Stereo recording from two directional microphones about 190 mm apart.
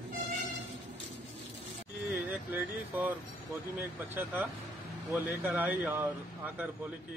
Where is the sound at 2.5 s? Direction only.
10° right (ahead or behind).